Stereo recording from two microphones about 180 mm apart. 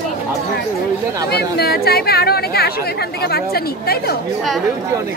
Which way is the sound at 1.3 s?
60° left (ahead or behind).